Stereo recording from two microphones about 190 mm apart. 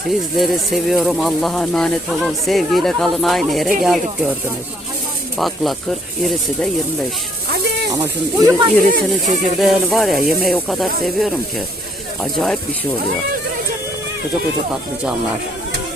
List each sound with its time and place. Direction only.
0.1 s speech: centre (ahead or behind)
5.4 s speech: centre (ahead or behind)
8.0 s speech: 20° right (ahead or behind)
8.8 s speech: 45° right (ahead or behind)
9.6 s speech: centre (ahead or behind)